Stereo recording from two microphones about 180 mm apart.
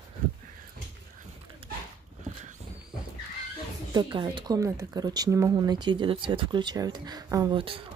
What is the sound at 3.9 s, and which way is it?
Speech, 25° right (ahead or behind).